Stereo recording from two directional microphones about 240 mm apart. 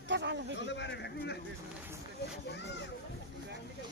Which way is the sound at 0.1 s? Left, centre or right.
Right.